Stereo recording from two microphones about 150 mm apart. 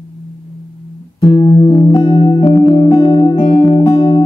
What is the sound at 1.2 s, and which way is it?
Music, 30° left (ahead or behind).